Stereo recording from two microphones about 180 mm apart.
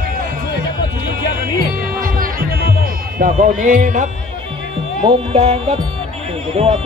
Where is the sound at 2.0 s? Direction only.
55° right (ahead or behind).